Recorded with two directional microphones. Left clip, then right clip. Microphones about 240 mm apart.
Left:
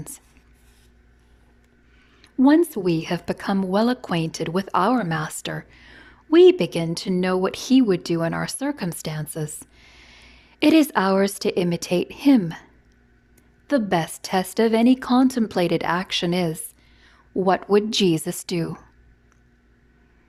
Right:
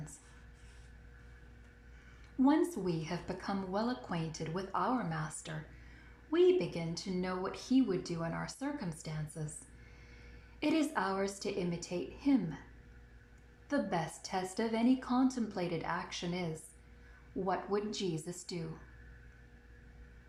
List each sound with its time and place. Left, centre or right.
2.2 s a woman's voice: left
13.7 s a woman's voice: left